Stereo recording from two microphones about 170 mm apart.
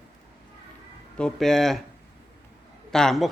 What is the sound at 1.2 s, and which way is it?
Speech, 5° left (ahead or behind).